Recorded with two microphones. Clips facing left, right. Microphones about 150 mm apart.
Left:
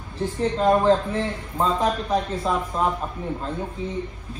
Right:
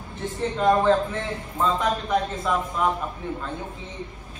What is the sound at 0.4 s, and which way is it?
A man's voice, 35° left (ahead or behind).